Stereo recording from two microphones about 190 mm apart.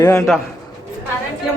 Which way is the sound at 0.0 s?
10° left (ahead or behind).